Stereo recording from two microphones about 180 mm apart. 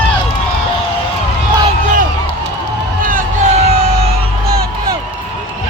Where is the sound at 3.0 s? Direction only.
45° right (ahead or behind).